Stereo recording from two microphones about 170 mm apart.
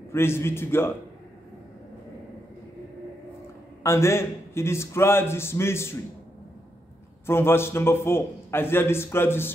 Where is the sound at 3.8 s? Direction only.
15° left (ahead or behind).